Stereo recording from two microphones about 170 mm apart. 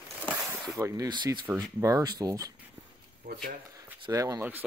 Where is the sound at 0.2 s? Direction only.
5° left (ahead or behind).